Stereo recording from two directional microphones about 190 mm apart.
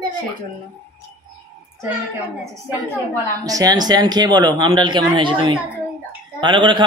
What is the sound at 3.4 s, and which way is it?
A man's voice, 20° right (ahead or behind).